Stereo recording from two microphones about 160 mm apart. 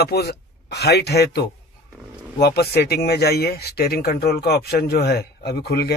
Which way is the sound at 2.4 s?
85° left.